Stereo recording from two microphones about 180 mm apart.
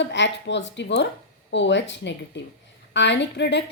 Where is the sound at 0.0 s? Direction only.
80° left.